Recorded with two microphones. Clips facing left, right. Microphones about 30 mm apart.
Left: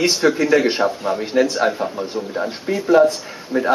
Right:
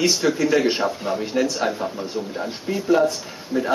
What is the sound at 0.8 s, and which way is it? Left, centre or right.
Speech, centre.